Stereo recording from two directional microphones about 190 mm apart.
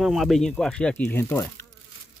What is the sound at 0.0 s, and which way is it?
Speech, centre (ahead or behind).